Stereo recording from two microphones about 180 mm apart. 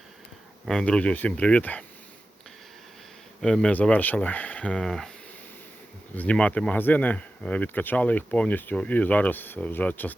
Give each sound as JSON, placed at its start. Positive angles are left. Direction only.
{"t": 0.6, "sound": "speech", "side_deg": 5}
{"t": 3.4, "sound": "speech", "side_deg": 5}
{"t": 6.1, "sound": "speech", "side_deg": 5}